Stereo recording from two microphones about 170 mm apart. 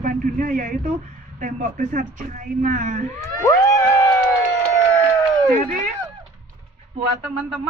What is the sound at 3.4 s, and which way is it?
Cat, 20° left (ahead or behind).